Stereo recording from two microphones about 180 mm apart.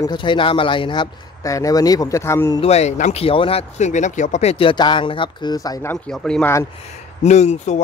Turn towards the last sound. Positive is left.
turn(degrees=40)  # may be behind; listen again after turning